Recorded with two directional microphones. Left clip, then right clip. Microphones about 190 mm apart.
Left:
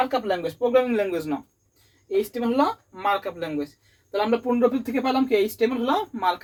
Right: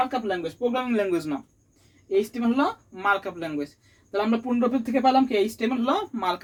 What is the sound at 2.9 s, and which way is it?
Speech, 20° right (ahead or behind).